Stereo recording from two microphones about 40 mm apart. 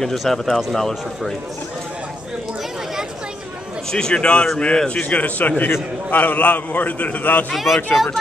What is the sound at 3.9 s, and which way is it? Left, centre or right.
A man's voice, centre.